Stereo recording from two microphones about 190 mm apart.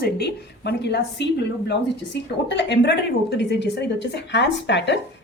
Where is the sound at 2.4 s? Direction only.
65° left (ahead or behind).